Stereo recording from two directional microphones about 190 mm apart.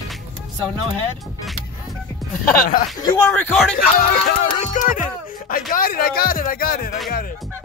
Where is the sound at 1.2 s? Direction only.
Centre (ahead or behind).